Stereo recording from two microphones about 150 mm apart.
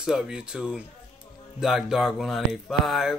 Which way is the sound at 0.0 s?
5° right (ahead or behind).